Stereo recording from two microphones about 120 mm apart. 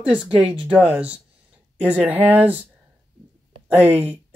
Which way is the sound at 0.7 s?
10° right (ahead or behind).